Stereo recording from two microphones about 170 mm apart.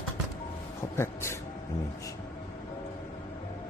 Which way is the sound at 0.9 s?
15° left (ahead or behind).